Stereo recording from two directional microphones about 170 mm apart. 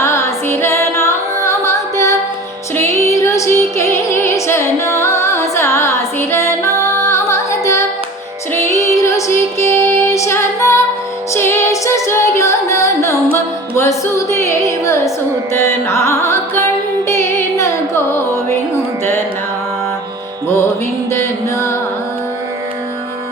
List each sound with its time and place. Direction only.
0.0 s music: 15° left (ahead or behind)
8.5 s female singing: 15° left (ahead or behind)
11.3 s music: 15° left (ahead or behind)
21.1 s music: 15° left (ahead or behind)